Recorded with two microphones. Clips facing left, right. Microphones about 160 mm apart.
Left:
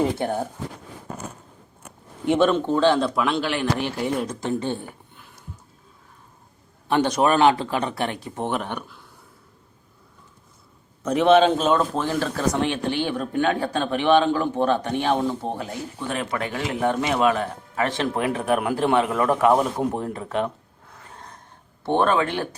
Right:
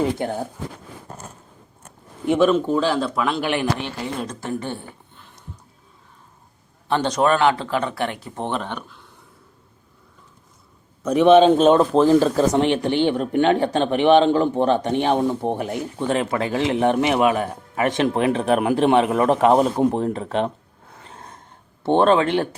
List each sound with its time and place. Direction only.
2.2 s speech: centre (ahead or behind)
3.4 s a man's voice: 15° right (ahead or behind)
3.8 s speech: 10° left (ahead or behind)
7.2 s speech: 15° left (ahead or behind)
11.0 s a man's voice: 15° right (ahead or behind)
11.9 s speech: 35° right (ahead or behind)
12.5 s speech: 20° right (ahead or behind)
21.0 s gasp: 25° right (ahead or behind)
21.8 s speech: 25° right (ahead or behind)